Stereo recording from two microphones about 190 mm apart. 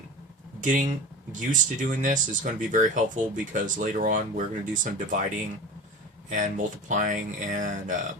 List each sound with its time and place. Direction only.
0.6 s speech: 45° right (ahead or behind)
6.3 s speech: 40° right (ahead or behind)